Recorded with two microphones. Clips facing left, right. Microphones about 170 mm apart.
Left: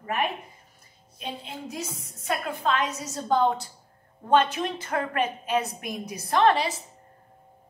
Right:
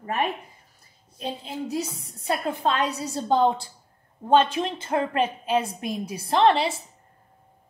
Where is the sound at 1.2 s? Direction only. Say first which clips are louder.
Right 5 dB; 35° right (ahead or behind).